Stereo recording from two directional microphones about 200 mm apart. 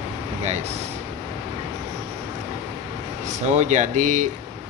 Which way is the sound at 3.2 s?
35° right (ahead or behind).